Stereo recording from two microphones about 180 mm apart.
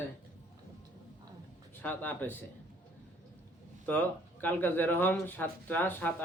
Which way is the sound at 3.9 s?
10° left (ahead or behind).